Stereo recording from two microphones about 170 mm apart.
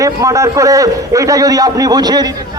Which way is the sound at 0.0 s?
20° right (ahead or behind).